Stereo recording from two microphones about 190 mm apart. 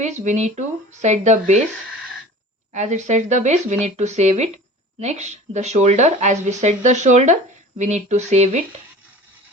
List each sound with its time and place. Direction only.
0.0 s speech: 35° right (ahead or behind)
2.7 s speech: 40° right (ahead or behind)